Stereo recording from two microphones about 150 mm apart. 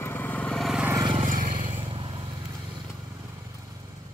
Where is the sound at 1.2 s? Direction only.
60° right (ahead or behind).